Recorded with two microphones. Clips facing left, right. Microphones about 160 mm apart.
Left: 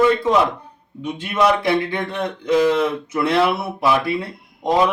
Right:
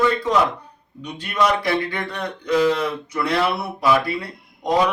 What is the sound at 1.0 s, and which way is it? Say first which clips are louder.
Speech: left 3 dB; 25° left (ahead or behind).